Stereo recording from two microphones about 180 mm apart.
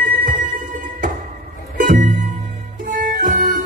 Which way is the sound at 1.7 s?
50° right (ahead or behind).